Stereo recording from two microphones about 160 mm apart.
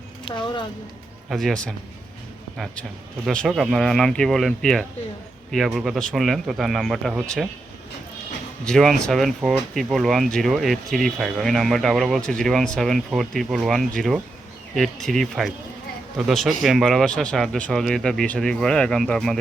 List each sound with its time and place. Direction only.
0.3 s speech: 30° left (ahead or behind)
1.3 s speech: centre (ahead or behind)
3.2 s speech: centre (ahead or behind)
8.6 s speech: centre (ahead or behind)